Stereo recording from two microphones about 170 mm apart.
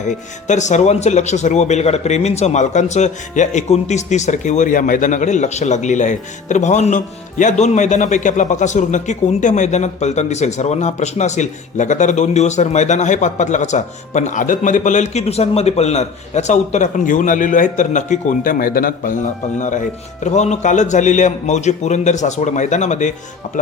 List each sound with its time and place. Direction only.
0.1 s speech: 45° left (ahead or behind)